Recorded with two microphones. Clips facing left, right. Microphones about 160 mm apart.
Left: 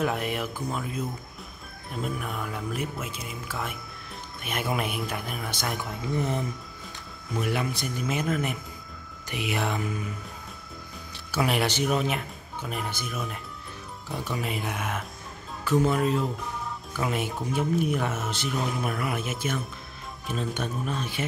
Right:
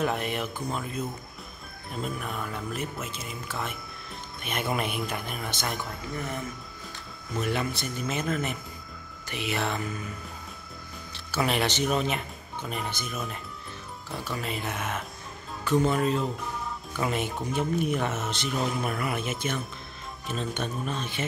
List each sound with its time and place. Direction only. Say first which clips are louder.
0.0 s speech: left 1 dB; 5° left (ahead or behind)
6.1 s speech: left 6 dB; 25° left (ahead or behind)
7.3 s speech: left 1 dB; 10° left (ahead or behind)
11.3 s speech: left 1 dB; 10° left (ahead or behind)